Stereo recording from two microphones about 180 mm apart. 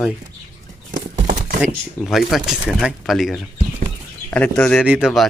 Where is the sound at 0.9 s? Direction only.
45° right (ahead or behind).